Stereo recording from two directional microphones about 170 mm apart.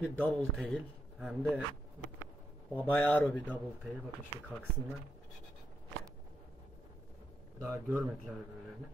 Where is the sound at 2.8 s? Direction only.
10° left (ahead or behind).